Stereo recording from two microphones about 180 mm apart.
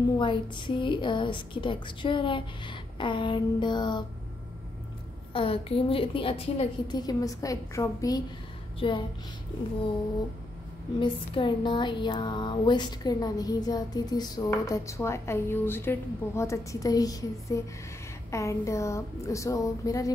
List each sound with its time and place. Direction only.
0.2 s speech: 25° left (ahead or behind)
5.3 s a woman's voice: 30° left (ahead or behind)
7.0 s speech: 20° left (ahead or behind)
11.0 s a woman's voice: 25° left (ahead or behind)